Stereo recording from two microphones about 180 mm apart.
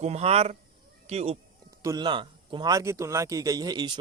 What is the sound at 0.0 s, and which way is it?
Speech, 35° right (ahead or behind).